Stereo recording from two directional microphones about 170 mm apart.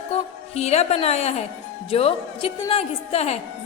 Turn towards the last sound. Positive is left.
turn(degrees=35)  # may be behind; listen again after turning